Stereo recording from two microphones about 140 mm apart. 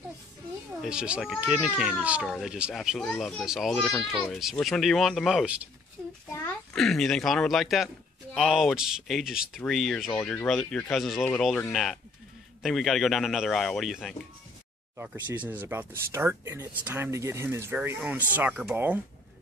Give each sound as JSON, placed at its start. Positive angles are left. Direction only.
{"t": 0.8, "sound": "a man's voice", "side_deg": -5}
{"t": 6.7, "sound": "a man's voice", "side_deg": 5}
{"t": 15.0, "sound": "speech", "side_deg": -15}